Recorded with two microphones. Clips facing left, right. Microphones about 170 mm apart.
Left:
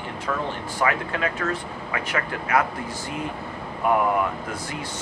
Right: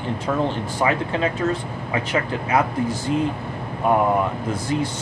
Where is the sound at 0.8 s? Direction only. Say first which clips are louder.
Right 3 dB; 25° right (ahead or behind).